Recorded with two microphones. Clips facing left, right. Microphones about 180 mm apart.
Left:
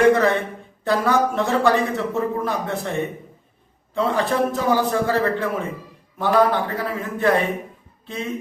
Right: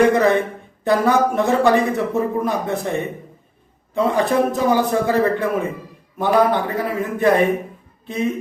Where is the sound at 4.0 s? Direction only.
15° right (ahead or behind).